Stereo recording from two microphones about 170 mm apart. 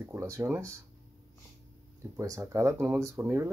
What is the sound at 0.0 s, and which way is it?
Speech, 15° right (ahead or behind).